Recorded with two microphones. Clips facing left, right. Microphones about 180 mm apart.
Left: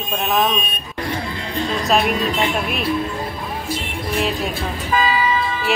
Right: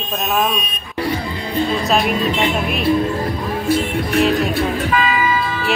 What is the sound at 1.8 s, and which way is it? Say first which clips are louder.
Speech: right 1 dB; centre (ahead or behind).